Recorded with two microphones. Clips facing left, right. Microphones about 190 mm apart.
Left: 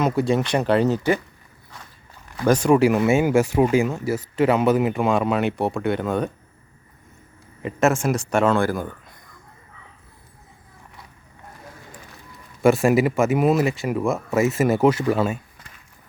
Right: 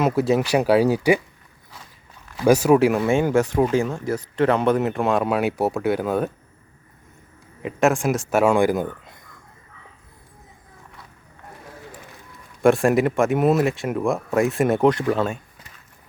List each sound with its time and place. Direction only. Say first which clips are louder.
0.0 s speech: right 1 dB; 5° right (ahead or behind)
2.3 s speech: right 2 dB; 5° right (ahead or behind)
7.6 s speech: even; centre (ahead or behind); by 9.1 s 20° right (ahead or behind)
12.6 s speech: even; centre (ahead or behind)